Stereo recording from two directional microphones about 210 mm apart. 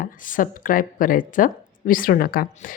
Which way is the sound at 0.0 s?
40° left (ahead or behind).